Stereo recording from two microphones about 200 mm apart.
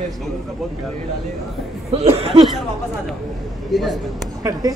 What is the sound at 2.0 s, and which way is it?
Speech, 30° right (ahead or behind).